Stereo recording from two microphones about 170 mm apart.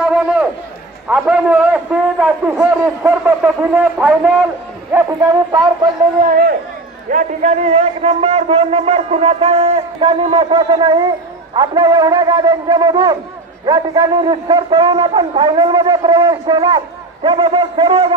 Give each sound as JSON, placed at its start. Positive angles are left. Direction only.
{"t": 0.0, "sound": "a sound", "side_deg": -5}
{"t": 1.0, "sound": "a man's voice", "side_deg": -10}
{"t": 4.9, "sound": "a man's voice", "side_deg": -20}
{"t": 6.2, "sound": "a man's voice", "side_deg": -50}
{"t": 10.7, "sound": "a man's voice", "side_deg": -25}